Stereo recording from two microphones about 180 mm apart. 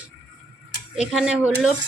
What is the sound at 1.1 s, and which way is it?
Speech, 5° right (ahead or behind).